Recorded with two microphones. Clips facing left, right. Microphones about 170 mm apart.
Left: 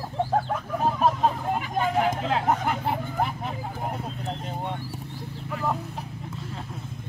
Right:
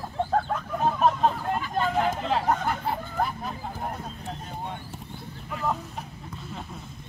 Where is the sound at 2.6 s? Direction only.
15° left (ahead or behind).